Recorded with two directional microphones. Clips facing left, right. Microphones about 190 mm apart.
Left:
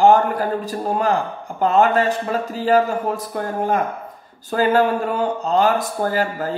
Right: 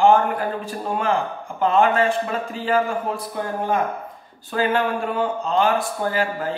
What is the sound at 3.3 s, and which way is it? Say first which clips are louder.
Speech: left 1 dB; 50° left (ahead or behind).